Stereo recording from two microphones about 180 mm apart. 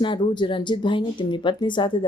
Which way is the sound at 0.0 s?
25° left (ahead or behind).